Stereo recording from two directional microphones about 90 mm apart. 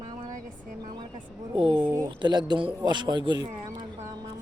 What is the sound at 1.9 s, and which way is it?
Speech, 50° right (ahead or behind).